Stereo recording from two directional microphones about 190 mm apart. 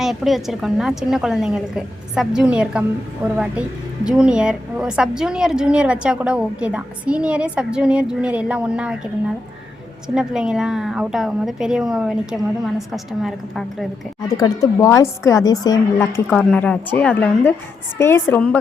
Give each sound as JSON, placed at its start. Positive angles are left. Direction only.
{"t": 0.0, "sound": "a woman's voice", "side_deg": 0}
{"t": 10.2, "sound": "a woman's voice", "side_deg": -5}
{"t": 14.3, "sound": "a woman's voice", "side_deg": 20}
{"t": 16.3, "sound": "a woman's voice", "side_deg": 5}